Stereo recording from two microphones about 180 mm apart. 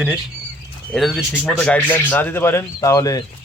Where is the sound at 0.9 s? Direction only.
Centre (ahead or behind).